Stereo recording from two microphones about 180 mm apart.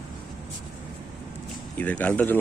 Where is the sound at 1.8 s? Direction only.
10° left (ahead or behind).